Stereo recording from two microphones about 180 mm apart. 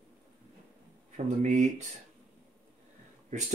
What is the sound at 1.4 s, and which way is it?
Speech, 40° right (ahead or behind).